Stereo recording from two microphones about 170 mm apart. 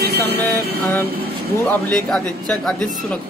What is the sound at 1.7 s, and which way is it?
Speech, 5° left (ahead or behind).